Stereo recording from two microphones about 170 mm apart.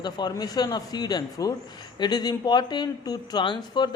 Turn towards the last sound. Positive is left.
turn(degrees=25)  # may be behind; listen again after turning